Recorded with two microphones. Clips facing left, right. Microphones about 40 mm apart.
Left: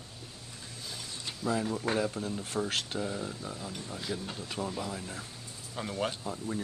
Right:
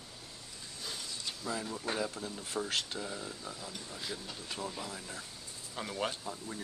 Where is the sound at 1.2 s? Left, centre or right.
Centre.